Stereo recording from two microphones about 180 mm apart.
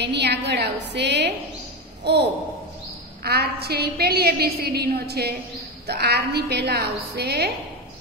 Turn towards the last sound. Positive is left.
turn(degrees=-65)  # may be behind; listen again after turning